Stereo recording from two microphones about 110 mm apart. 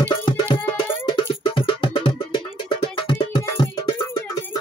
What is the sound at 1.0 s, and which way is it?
Music, 45° left (ahead or behind).